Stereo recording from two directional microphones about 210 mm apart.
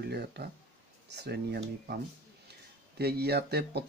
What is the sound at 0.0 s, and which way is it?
Speech, 50° right (ahead or behind).